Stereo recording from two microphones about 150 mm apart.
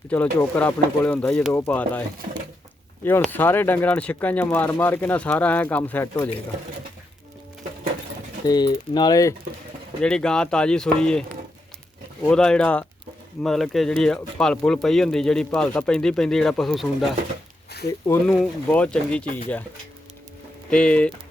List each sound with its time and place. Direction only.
0.1 s speech: 10° left (ahead or behind)
3.2 s speech: 15° left (ahead or behind)
8.4 s speech: 25° left (ahead or behind)
10.0 s speech: 5° left (ahead or behind)
12.3 s speech: 5° left (ahead or behind)
17.8 s speech: 20° left (ahead or behind)
18.3 s speech: 5° left (ahead or behind)
20.7 s speech: 5° left (ahead or behind)